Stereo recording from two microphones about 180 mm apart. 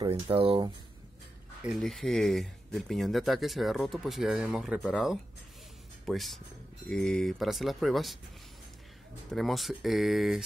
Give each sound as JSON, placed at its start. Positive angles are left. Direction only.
{"t": 0.0, "sound": "speech", "side_deg": -30}
{"t": 1.6, "sound": "speech", "side_deg": 0}
{"t": 9.3, "sound": "speech", "side_deg": 0}